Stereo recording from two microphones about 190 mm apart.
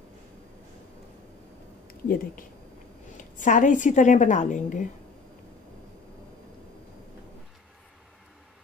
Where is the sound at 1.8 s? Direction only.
50° left (ahead or behind).